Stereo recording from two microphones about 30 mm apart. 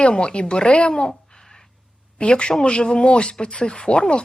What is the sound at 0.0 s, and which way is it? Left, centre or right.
Speech, left.